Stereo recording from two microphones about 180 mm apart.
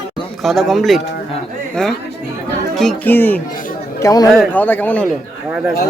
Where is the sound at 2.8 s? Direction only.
5° left (ahead or behind).